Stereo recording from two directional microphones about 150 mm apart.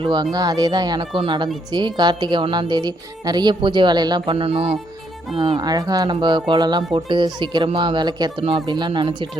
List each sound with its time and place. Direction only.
0.0 s speech: 30° right (ahead or behind)